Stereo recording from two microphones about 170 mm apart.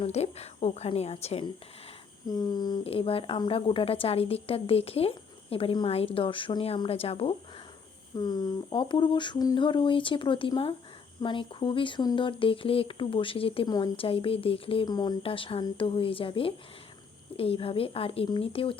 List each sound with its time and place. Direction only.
0.0 s speech: 40° left (ahead or behind)
2.3 s speech: 20° left (ahead or behind)
8.1 s speech: 25° left (ahead or behind)